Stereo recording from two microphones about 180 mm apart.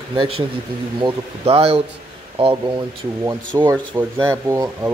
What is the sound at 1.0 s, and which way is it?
Speech, 35° right (ahead or behind).